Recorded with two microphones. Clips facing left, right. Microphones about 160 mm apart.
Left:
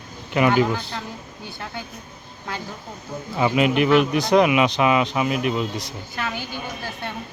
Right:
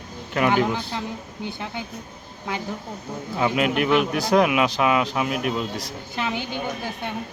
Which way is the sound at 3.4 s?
Centre (ahead or behind).